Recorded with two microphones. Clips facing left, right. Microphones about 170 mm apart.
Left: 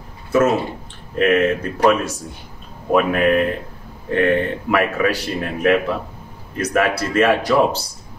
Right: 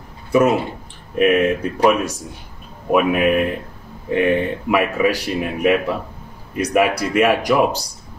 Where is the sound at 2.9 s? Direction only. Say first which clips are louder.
Even; 15° right (ahead or behind).